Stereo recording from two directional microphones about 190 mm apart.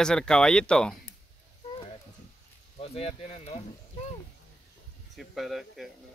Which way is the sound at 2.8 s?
30° left (ahead or behind).